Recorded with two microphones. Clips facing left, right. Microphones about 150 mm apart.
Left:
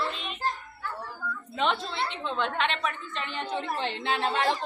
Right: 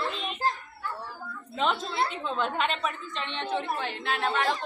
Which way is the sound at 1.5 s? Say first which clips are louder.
Right 1 dB; centre (ahead or behind).